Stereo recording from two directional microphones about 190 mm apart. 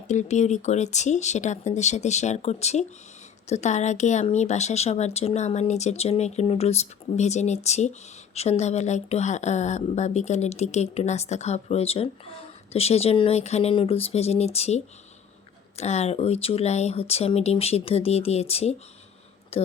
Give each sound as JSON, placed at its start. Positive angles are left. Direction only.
{"t": 0.1, "sound": "speech", "side_deg": 40}